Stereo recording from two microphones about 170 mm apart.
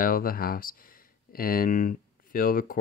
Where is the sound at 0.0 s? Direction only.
60° left (ahead or behind).